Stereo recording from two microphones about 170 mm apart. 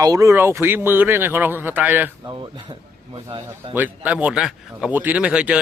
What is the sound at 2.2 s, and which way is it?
A man's voice, 30° right (ahead or behind).